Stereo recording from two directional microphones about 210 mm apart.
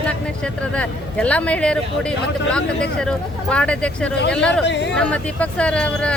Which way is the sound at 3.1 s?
5° left (ahead or behind).